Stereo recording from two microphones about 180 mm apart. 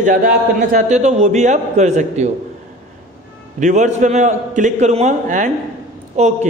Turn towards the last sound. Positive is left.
turn(degrees=-40)  # may be behind; listen again after turning